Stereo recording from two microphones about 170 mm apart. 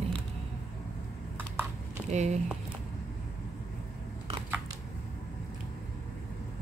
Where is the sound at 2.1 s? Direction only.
45° right (ahead or behind).